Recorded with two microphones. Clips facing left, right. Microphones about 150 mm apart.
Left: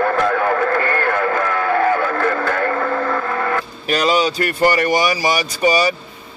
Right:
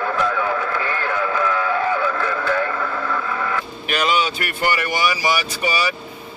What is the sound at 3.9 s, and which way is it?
Speech, 35° left (ahead or behind).